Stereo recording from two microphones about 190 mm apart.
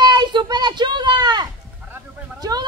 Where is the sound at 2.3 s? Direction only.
20° right (ahead or behind).